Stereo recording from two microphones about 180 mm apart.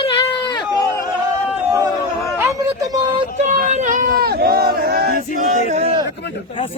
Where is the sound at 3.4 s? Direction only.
40° right (ahead or behind); by 5.2 s 60° right (ahead or behind).